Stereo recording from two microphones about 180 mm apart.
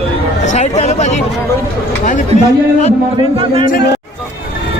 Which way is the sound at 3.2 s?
30° right (ahead or behind).